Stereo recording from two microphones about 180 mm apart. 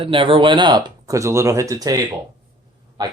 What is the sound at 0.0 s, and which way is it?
Speech, 30° right (ahead or behind).